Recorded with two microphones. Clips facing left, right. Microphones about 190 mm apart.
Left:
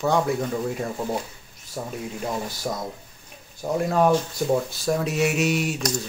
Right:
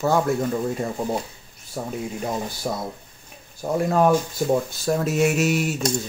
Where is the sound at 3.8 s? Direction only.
Centre (ahead or behind).